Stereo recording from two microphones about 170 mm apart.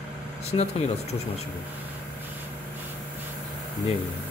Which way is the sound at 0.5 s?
30° left (ahead or behind).